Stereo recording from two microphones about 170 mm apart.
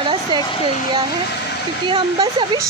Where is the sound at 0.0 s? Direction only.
30° right (ahead or behind).